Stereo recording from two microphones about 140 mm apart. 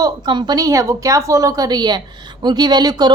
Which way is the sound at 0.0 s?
30° right (ahead or behind).